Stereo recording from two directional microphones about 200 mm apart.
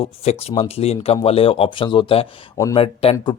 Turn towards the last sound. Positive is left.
turn(degrees=30)  # may be behind; listen again after turning